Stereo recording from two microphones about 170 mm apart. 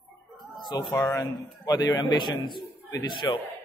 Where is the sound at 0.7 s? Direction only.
20° left (ahead or behind).